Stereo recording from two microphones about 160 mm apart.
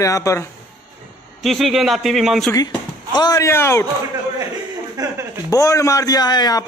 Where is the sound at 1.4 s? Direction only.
Centre (ahead or behind).